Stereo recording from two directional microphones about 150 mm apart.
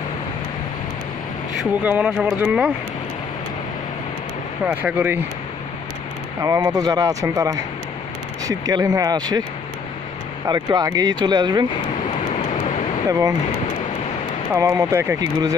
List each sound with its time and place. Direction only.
1.6 s speech: 10° right (ahead or behind)
4.6 s speech: 10° right (ahead or behind)
6.4 s speech: 20° right (ahead or behind)
10.4 s speech: 25° right (ahead or behind)
14.5 s speech: 20° right (ahead or behind)